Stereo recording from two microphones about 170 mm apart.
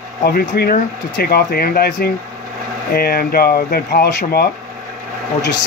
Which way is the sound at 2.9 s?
65° left (ahead or behind).